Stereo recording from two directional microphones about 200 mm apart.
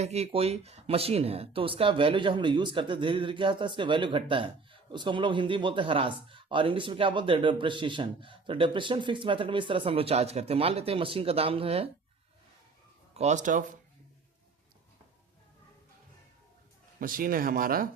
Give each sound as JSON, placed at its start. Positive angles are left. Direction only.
{"t": 0.0, "sound": "speech", "side_deg": -35}
{"t": 13.1, "sound": "speech", "side_deg": -35}
{"t": 17.0, "sound": "speech", "side_deg": -45}